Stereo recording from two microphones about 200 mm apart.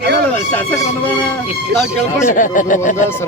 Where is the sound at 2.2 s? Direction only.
40° left (ahead or behind).